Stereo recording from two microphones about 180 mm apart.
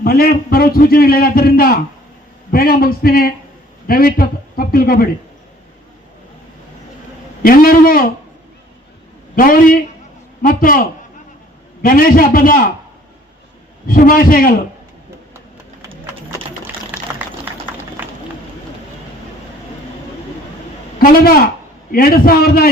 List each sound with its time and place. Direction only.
0.0 s a man's voice: 55° left (ahead or behind)
7.4 s a man's voice: 55° left (ahead or behind)
9.3 s a man's voice: 50° left (ahead or behind)
13.8 s a man's voice: 50° left (ahead or behind)
16.9 s a sound: 10° right (ahead or behind)
21.0 s a man's voice: 55° left (ahead or behind)